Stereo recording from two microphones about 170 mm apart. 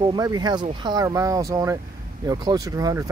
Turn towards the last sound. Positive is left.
turn(degrees=-20)  # may be behind; listen again after turning